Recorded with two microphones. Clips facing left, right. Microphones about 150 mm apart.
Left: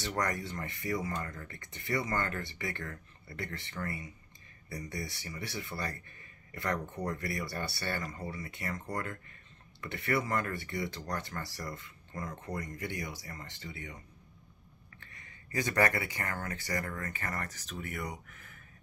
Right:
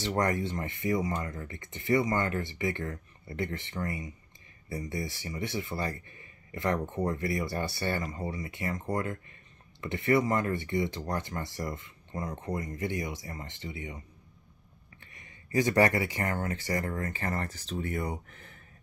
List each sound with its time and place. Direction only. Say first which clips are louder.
0.0 s speech: right 6 dB; 25° right (ahead or behind)
15.0 s speech: right 2 dB; 20° right (ahead or behind)